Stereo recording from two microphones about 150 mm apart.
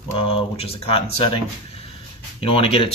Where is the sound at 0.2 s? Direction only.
40° left (ahead or behind).